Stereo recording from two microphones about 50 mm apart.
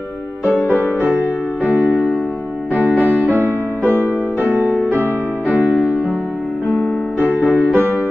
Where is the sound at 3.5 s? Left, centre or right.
Left.